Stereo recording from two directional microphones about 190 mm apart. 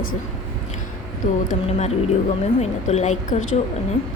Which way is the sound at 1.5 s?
35° left (ahead or behind).